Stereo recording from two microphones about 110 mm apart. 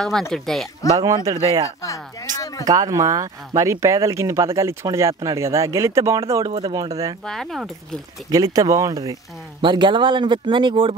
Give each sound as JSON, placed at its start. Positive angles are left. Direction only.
{"t": 0.3, "sound": "speech", "side_deg": 5}
{"t": 0.8, "sound": "speech", "side_deg": -35}
{"t": 2.3, "sound": "speech", "side_deg": 30}
{"t": 2.6, "sound": "speech", "side_deg": -35}
{"t": 7.2, "sound": "speech", "side_deg": 5}
{"t": 8.3, "sound": "speech", "side_deg": -35}